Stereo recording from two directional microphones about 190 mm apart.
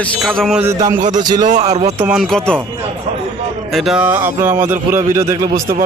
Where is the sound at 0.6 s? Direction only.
15° right (ahead or behind).